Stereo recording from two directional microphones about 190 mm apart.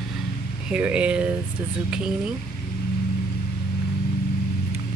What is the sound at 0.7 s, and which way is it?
Speech, 5° right (ahead or behind).